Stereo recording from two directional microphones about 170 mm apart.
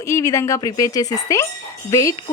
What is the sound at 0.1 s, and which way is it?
A woman's voice, 15° left (ahead or behind).